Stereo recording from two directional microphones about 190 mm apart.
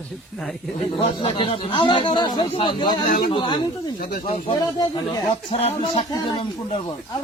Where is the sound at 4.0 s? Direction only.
55° left (ahead or behind).